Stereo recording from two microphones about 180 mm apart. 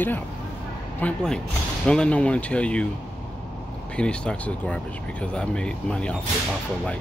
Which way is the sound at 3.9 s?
5° left (ahead or behind).